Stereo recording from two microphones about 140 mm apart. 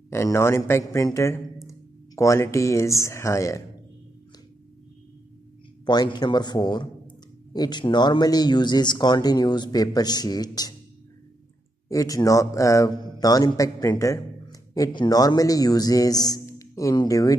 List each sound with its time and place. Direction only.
0.1 s a man's voice: 20° left (ahead or behind)
5.9 s a man's voice: 30° left (ahead or behind)
11.9 s a man's voice: 25° left (ahead or behind)